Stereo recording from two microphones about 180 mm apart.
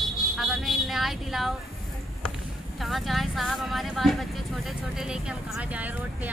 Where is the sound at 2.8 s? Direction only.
Centre (ahead or behind).